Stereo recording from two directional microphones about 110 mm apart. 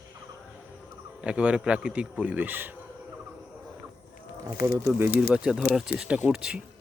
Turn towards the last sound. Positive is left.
turn(degrees=-5)  # may be behind; listen again after turning